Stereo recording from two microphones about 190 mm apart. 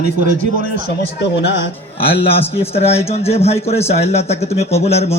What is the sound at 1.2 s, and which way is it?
Speech, 65° left (ahead or behind).